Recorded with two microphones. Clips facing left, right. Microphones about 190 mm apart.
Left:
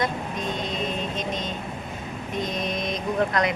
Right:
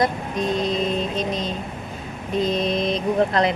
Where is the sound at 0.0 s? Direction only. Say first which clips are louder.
Right 5 dB; 35° right (ahead or behind).